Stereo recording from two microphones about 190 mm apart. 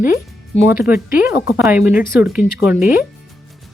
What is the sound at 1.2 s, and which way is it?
Speech, 10° right (ahead or behind).